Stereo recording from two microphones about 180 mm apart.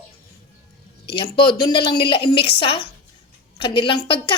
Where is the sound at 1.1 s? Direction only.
30° left (ahead or behind).